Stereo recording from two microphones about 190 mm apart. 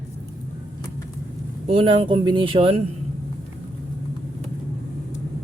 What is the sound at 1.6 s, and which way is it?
Speech, 30° right (ahead or behind).